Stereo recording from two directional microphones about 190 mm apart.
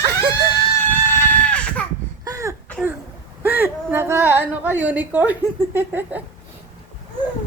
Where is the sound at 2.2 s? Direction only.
15° right (ahead or behind).